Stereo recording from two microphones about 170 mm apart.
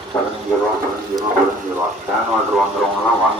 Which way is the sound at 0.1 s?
15° left (ahead or behind).